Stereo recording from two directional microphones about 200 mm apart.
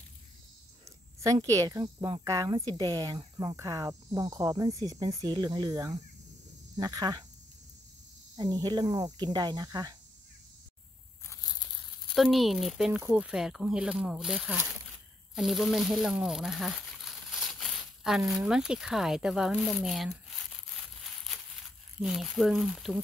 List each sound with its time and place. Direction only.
1.2 s speech: 15° right (ahead or behind)
8.4 s speech: 20° right (ahead or behind)
11.2 s crushing: 20° left (ahead or behind)
12.2 s speech: centre (ahead or behind)
15.3 s crumpling: centre (ahead or behind)
18.3 s speech: 5° right (ahead or behind)